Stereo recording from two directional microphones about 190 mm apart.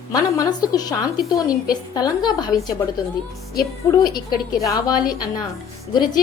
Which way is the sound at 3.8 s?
20° left (ahead or behind).